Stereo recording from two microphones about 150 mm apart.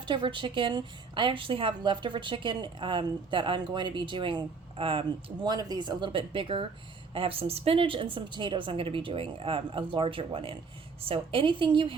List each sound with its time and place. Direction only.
0.0 s a woman's voice: 30° right (ahead or behind)